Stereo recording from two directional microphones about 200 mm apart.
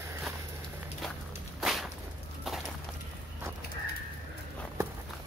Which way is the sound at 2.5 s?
Centre (ahead or behind).